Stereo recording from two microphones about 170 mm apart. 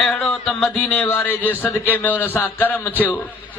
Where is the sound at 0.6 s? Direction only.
10° left (ahead or behind).